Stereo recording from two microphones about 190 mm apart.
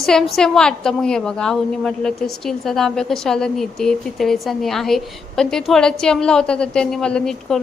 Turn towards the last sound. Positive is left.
turn(degrees=5)  # may be behind; listen again after turning